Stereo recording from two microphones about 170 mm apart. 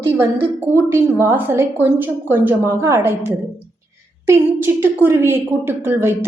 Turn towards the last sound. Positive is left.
turn(degrees=-15)  # may be behind; listen again after turning